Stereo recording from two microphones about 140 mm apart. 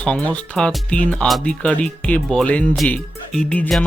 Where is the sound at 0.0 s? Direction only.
10° left (ahead or behind).